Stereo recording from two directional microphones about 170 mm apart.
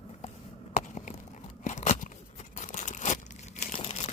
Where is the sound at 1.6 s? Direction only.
45° left (ahead or behind).